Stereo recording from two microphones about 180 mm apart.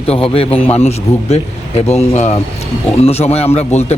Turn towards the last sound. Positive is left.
turn(degrees=35)  # may be behind; listen again after turning